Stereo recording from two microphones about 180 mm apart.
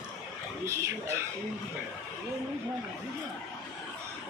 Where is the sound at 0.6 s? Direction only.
15° right (ahead or behind).